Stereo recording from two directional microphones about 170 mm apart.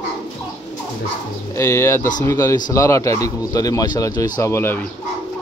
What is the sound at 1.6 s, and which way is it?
Speech, 15° left (ahead or behind).